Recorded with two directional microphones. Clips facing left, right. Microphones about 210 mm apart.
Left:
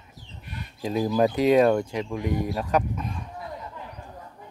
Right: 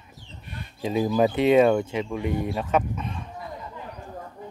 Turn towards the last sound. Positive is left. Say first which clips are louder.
# even
turn(degrees=0)  # may be behind; listen again after turning